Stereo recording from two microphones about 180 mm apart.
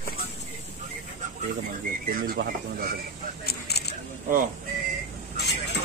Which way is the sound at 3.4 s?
65° left (ahead or behind).